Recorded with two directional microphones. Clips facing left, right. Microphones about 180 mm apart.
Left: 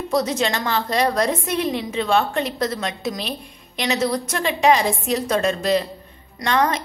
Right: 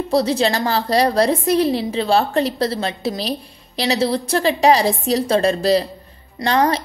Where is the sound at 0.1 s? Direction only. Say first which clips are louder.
Right 4 dB; 30° right (ahead or behind).